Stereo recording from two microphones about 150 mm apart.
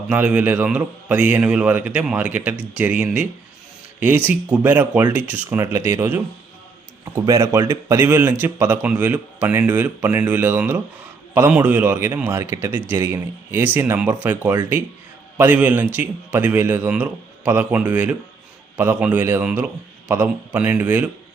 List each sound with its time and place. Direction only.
0.1 s a man's voice: 10° right (ahead or behind)
4.3 s a man's voice: 10° right (ahead or behind)